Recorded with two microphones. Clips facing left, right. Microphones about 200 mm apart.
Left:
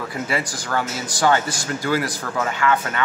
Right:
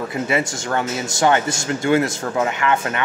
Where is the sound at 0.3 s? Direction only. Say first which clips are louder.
Right 3 dB; 25° right (ahead or behind).